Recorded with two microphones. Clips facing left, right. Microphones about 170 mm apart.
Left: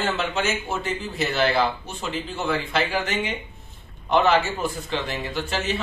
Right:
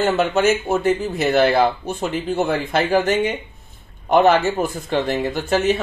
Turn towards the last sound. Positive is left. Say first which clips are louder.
# right 8 dB
turn(degrees=-50)  # may be behind; listen again after turning